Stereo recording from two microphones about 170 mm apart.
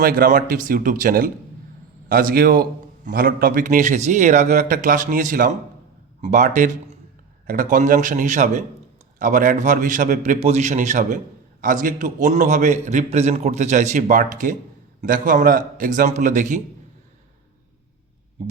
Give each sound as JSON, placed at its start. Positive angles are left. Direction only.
{"t": 0.0, "sound": "a man's voice", "side_deg": -60}